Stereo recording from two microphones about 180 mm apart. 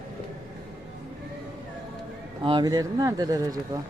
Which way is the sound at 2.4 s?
25° right (ahead or behind).